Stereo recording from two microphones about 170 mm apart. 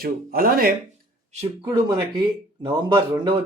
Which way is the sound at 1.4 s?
30° right (ahead or behind).